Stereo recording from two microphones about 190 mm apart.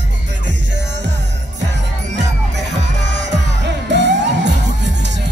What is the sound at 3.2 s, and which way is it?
Music, 65° right (ahead or behind).